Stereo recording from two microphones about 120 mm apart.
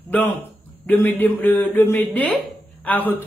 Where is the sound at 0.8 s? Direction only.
15° left (ahead or behind).